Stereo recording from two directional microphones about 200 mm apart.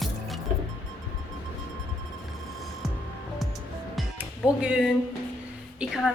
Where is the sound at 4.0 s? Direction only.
5° right (ahead or behind).